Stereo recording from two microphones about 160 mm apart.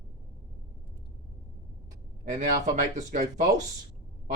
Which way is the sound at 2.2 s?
50° right (ahead or behind).